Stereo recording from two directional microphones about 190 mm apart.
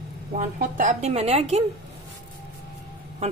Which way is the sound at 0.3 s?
40° right (ahead or behind).